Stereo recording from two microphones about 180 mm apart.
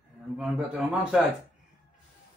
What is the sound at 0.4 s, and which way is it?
Speech, centre (ahead or behind).